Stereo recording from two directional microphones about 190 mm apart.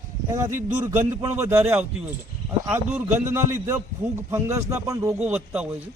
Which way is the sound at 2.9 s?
15° right (ahead or behind).